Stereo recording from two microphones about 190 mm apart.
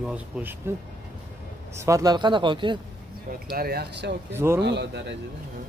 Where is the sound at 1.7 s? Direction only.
15° right (ahead or behind).